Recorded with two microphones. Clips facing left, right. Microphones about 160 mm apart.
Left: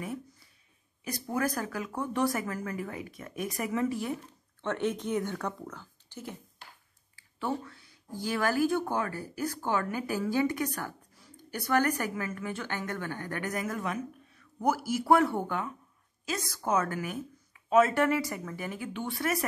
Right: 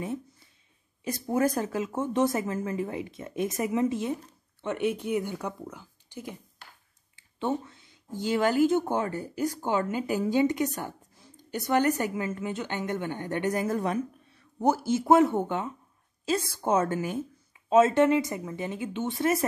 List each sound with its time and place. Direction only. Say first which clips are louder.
1.0 s speech: right 5 dB; 25° right (ahead or behind)